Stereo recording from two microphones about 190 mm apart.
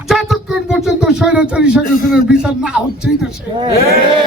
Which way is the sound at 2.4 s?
5° right (ahead or behind).